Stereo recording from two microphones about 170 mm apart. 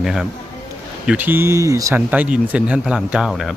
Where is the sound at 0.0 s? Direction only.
Centre (ahead or behind); by 2.0 s 20° right (ahead or behind).